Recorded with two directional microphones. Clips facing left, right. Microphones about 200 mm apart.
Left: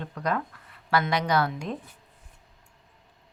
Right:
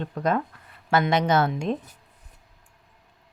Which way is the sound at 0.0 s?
25° right (ahead or behind).